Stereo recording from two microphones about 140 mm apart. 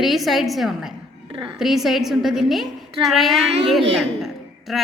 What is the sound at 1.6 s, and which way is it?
A woman's voice, centre (ahead or behind).